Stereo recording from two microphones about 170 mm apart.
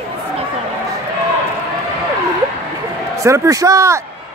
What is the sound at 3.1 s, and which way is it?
Speech, 15° right (ahead or behind).